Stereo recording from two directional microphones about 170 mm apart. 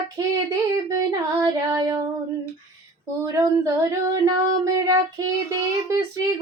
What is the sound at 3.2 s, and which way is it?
Child singing, 20° right (ahead or behind).